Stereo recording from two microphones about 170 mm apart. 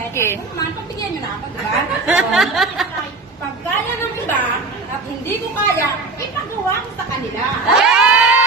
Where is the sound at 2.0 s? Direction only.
Centre (ahead or behind).